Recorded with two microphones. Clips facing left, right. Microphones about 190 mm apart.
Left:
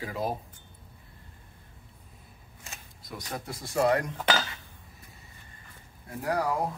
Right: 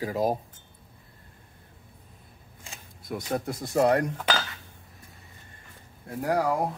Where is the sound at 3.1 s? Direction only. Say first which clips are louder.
Right 8 dB; 55° right (ahead or behind).